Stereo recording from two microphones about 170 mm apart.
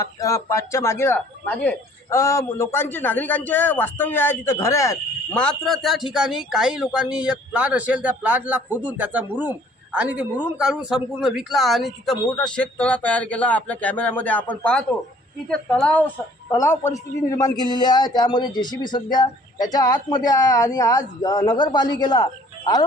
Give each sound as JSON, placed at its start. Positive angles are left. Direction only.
{"t": 0.0, "sound": "a woman's voice", "side_deg": 20}
{"t": 5.3, "sound": "a woman's voice", "side_deg": 5}